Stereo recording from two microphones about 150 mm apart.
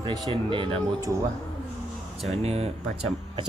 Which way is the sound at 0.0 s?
35° right (ahead or behind).